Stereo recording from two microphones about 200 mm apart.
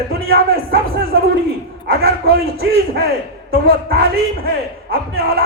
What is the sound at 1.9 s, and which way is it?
Speech, 50° right (ahead or behind).